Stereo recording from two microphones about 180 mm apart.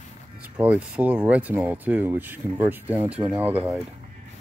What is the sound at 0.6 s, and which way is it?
Speech, 5° right (ahead or behind).